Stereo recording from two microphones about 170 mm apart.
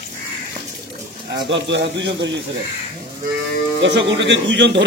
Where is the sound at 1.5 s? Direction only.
90° right.